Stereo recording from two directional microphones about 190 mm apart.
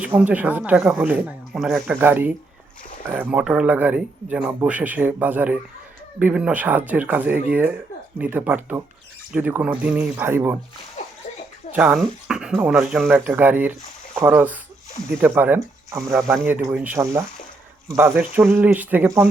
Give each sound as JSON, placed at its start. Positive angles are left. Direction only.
{"t": 0.0, "sound": "speech", "side_deg": -5}
{"t": 11.0, "sound": "splash", "side_deg": 40}
{"t": 11.7, "sound": "speech", "side_deg": -10}